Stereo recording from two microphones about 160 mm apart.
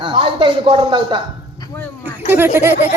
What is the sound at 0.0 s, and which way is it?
A woman's voice, 30° right (ahead or behind).